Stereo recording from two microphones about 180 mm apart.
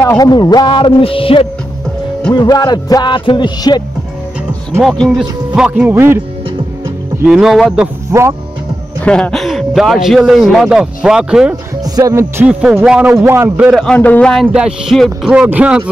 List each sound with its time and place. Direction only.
0.0 s speech: 20° left (ahead or behind)
4.8 s a man's voice: centre (ahead or behind)
9.0 s a man's voice: 5° left (ahead or behind)
11.8 s speech: 20° right (ahead or behind)
13.8 s a man's voice: 10° left (ahead or behind); by 15.8 s 10° right (ahead or behind)